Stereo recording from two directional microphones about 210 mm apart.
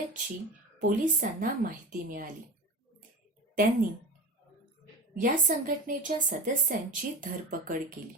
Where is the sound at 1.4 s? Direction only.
40° right (ahead or behind).